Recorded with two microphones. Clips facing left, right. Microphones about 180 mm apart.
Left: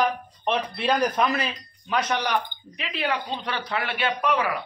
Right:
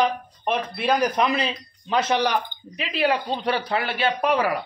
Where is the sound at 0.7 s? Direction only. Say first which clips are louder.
Right 3 dB; 10° right (ahead or behind).